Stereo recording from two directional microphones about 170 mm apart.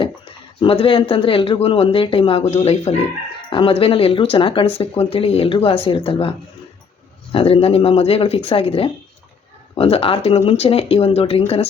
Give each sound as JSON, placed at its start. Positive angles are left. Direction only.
{"t": 0.0, "sound": "speech", "side_deg": 30}
{"t": 7.3, "sound": "speech", "side_deg": 35}